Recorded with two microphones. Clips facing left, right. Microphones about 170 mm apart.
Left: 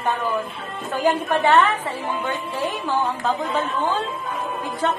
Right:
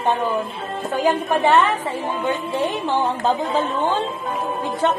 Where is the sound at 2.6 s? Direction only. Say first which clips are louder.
Right 1 dB; 30° right (ahead or behind).